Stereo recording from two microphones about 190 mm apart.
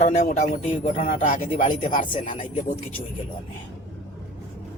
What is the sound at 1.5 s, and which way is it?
Speech, 30° left (ahead or behind).